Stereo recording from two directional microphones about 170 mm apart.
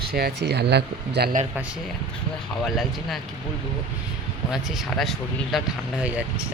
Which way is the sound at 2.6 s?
Centre (ahead or behind).